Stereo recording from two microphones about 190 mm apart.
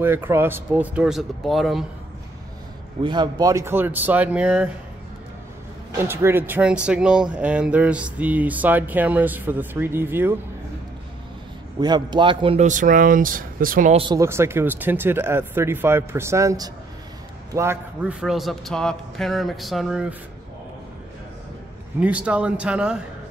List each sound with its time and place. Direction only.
0.0 s speech: 10° right (ahead or behind)
3.0 s speech: 25° right (ahead or behind); by 4.6 s 5° right (ahead or behind)
5.9 s speech: 15° right (ahead or behind)
11.8 s a man's voice: 25° right (ahead or behind)
12.6 s speech: 45° right (ahead or behind)
13.9 s speech: 20° right (ahead or behind)
18.2 s speech: centre (ahead or behind)
22.0 s speech: 5° right (ahead or behind)